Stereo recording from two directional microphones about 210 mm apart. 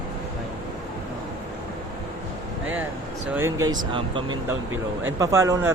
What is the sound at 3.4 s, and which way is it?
Speech, 15° right (ahead or behind).